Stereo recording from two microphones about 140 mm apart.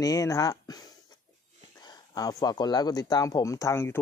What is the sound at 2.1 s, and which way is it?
Speech, 25° left (ahead or behind).